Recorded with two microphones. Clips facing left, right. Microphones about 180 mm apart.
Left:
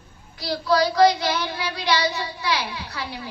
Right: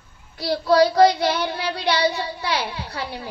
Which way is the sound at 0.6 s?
55° right (ahead or behind).